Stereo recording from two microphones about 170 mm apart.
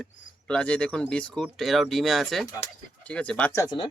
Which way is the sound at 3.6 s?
25° left (ahead or behind).